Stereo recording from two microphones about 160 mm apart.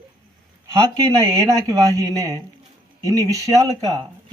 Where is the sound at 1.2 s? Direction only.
20° right (ahead or behind).